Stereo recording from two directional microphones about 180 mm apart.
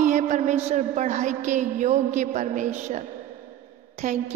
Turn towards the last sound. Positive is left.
turn(degrees=-45)  # may be behind; listen again after turning